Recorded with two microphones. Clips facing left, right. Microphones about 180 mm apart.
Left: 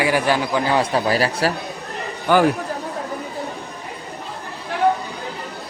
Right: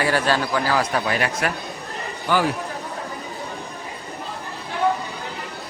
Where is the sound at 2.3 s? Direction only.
55° left (ahead or behind).